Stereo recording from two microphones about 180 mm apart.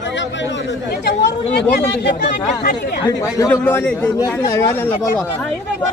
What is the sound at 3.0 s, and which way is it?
Speech, 20° left (ahead or behind).